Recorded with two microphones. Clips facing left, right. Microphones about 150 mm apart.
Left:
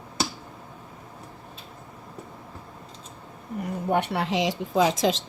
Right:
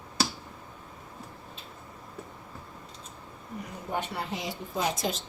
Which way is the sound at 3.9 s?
70° left (ahead or behind).